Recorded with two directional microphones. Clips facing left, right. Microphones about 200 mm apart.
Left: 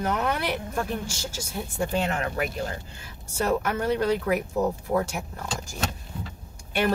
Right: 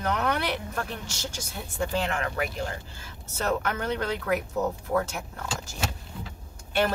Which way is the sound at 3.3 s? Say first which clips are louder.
Left 3 dB; 10° left (ahead or behind).